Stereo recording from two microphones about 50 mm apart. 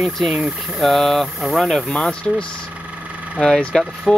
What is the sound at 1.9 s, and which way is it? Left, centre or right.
Speech, centre.